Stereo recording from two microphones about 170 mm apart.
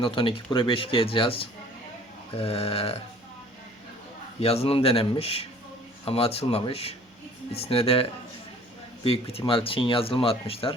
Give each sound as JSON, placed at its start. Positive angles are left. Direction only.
{"t": 0.0, "sound": "speech", "side_deg": 30}
{"t": 4.4, "sound": "speech", "side_deg": 35}
{"t": 9.0, "sound": "speech", "side_deg": 30}